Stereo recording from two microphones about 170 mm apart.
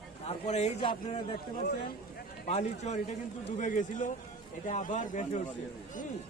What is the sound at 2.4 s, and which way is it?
Speech, 40° left (ahead or behind).